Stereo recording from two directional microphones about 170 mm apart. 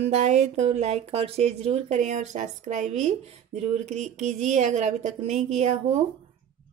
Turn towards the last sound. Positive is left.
turn(degrees=-40)  # may be behind; listen again after turning